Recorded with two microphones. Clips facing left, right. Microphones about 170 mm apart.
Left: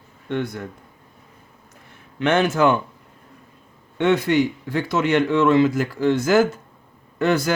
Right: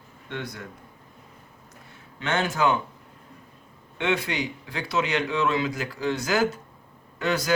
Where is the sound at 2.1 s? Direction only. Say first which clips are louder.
Left 8 dB; 55° left (ahead or behind).